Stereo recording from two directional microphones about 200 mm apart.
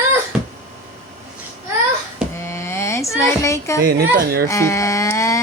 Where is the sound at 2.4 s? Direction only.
15° left (ahead or behind).